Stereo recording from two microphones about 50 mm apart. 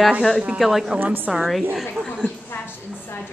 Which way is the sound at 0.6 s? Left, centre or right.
Centre.